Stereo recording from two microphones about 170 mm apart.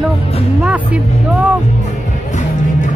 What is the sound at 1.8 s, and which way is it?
Music, 45° left (ahead or behind).